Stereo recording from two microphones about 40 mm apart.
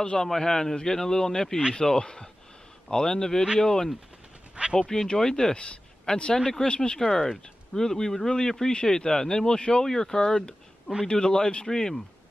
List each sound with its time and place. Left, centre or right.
0.0 s speech: left
6.8 s speech: centre